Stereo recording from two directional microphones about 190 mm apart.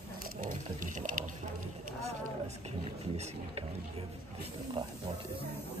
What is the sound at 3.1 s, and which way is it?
Speech, 35° right (ahead or behind).